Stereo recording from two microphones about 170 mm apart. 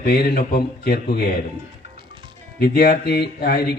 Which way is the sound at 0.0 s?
70° left (ahead or behind).